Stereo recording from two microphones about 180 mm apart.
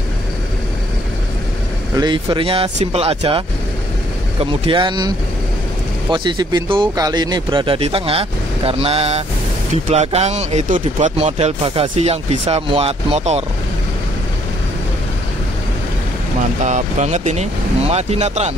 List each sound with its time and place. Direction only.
2.0 s speech: 25° right (ahead or behind)
16.6 s speech: 40° right (ahead or behind)